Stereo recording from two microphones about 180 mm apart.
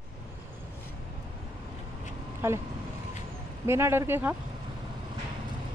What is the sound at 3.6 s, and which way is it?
Speech, 15° right (ahead or behind).